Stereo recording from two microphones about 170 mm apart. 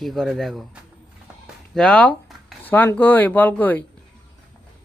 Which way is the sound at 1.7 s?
5° left (ahead or behind).